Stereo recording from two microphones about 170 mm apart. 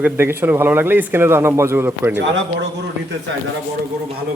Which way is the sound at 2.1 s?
90° right.